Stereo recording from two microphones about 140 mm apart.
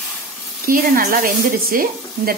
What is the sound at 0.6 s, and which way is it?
Speech, 90° right.